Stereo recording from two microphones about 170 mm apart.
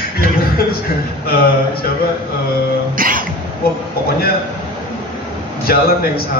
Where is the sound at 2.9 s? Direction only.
55° right (ahead or behind).